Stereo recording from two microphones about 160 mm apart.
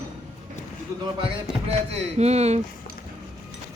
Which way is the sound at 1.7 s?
40° right (ahead or behind).